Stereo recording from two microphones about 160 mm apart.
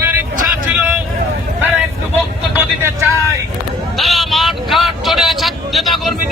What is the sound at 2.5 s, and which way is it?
Vehicle, 15° right (ahead or behind).